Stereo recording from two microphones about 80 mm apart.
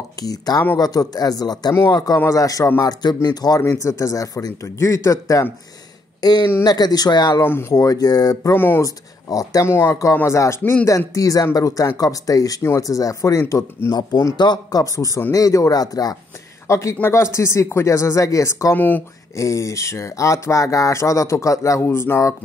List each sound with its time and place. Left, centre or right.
0.2 s speech: left
2.8 s speech: left
4.7 s speech: left
6.2 s speech: left
7.4 s speech: left
7.7 s speech: left
8.5 s speech: left
8.8 s speech: left
10.6 s speech: left
10.9 s speech: left
13.9 s speech: left
16.6 s speech: left
18.8 s speech: left
19.3 s speech: left